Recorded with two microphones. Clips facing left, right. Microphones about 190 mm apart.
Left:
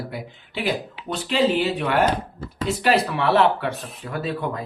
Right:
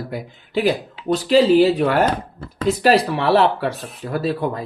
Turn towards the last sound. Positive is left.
turn(degrees=-35)  # may be behind; listen again after turning